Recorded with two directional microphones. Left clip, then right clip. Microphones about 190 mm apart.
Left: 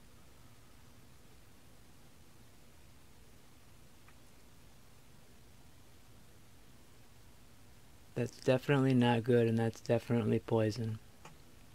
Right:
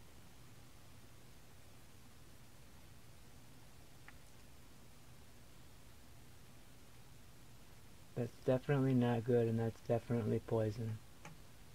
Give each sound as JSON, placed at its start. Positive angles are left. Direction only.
{"t": 8.2, "sound": "speech", "side_deg": 25}